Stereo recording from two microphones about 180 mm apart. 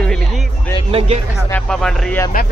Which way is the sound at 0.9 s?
30° right (ahead or behind).